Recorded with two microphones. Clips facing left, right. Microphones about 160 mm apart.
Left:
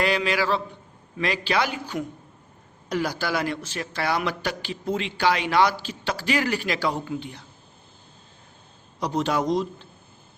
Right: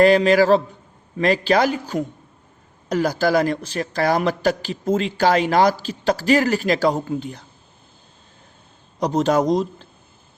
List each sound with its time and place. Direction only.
0.0 s a man's voice: 45° right (ahead or behind)
9.0 s speech: 40° right (ahead or behind)